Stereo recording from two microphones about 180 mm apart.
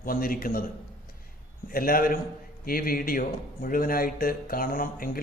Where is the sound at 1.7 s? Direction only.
55° left (ahead or behind).